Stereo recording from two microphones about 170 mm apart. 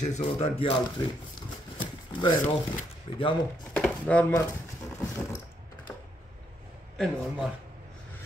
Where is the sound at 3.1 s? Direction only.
30° left (ahead or behind).